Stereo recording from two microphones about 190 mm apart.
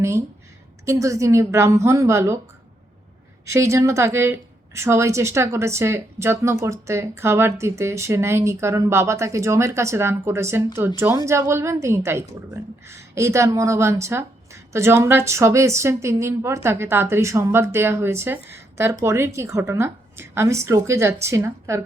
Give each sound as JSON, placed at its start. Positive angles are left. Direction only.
{"t": 0.9, "sound": "a woman's voice", "side_deg": -15}
{"t": 3.4, "sound": "a woman's voice", "side_deg": -15}